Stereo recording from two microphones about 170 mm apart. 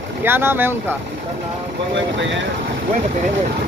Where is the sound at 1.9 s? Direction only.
90° right.